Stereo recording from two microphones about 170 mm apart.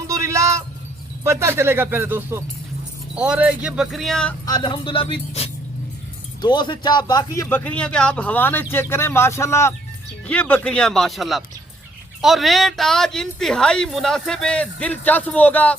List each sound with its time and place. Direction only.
0.1 s music: 15° right (ahead or behind)
1.2 s speech: 15° right (ahead or behind); by 4.4 s 5° left (ahead or behind)
4.4 s speech: 25° left (ahead or behind)
7.6 s speech: 5° left (ahead or behind)